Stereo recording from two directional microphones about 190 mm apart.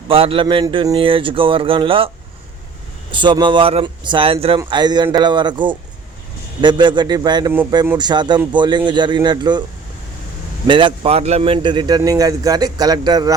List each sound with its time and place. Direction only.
0.1 s speech: 30° right (ahead or behind)
3.1 s speech: 25° right (ahead or behind)
10.7 s speech: 25° right (ahead or behind)